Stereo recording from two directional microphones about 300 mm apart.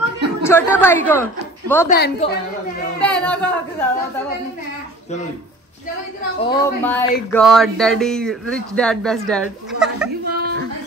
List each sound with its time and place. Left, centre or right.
0.4 s a woman's voice: centre
1.9 s a woman's voice: left
3.0 s speech: centre
6.4 s speech: centre
10.2 s a sound: right